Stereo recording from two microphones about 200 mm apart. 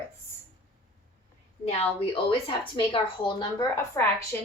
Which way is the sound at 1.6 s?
30° left (ahead or behind).